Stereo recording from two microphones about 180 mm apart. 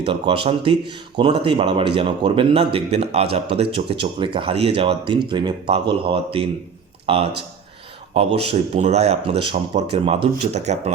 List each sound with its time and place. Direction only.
0.1 s speech: 30° right (ahead or behind)